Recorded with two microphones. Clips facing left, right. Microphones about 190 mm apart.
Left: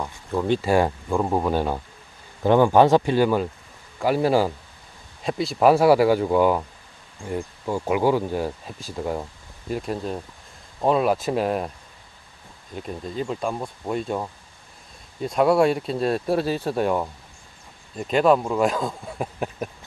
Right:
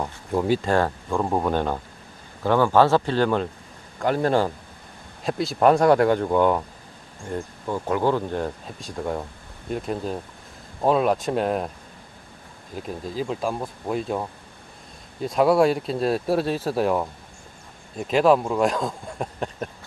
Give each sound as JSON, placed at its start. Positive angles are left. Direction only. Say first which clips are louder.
{"t": 0.0, "sound": "speech", "louder": "right 1 dB", "side_deg": -15}
{"t": 0.6, "sound": "speech", "louder": "left 2 dB", "side_deg": 10}
{"t": 12.7, "sound": "speech", "louder": "even", "side_deg": 0}